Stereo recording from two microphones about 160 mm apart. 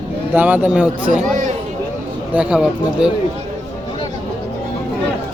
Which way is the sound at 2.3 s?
10° right (ahead or behind).